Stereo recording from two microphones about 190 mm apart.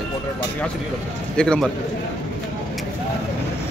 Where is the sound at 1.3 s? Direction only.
5° left (ahead or behind).